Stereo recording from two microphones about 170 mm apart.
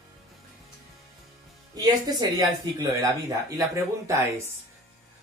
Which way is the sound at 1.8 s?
25° right (ahead or behind).